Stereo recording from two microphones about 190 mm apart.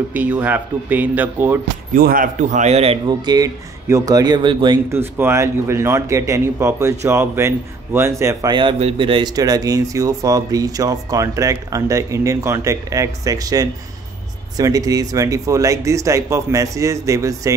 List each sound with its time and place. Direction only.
0.1 s speech: 10° right (ahead or behind)
2.0 s a man's voice: 50° right (ahead or behind); by 4.7 s 25° right (ahead or behind)
4.9 s speech: 15° right (ahead or behind)